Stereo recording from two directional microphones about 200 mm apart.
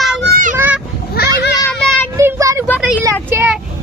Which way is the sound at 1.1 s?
55° left (ahead or behind).